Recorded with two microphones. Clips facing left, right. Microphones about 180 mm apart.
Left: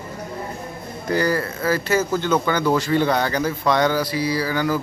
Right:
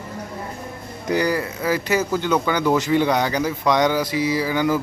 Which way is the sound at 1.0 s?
15° right (ahead or behind).